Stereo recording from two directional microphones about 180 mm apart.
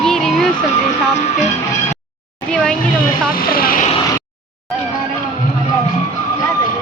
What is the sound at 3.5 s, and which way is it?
Speech, 55° left (ahead or behind).